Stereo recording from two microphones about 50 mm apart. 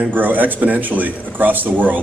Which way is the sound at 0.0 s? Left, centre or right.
Right.